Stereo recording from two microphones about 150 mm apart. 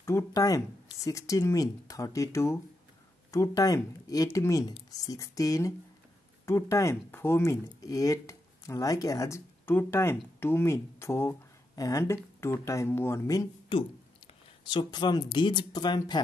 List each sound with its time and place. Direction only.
0.0 s speech: 20° left (ahead or behind)
14.7 s speech: 30° left (ahead or behind)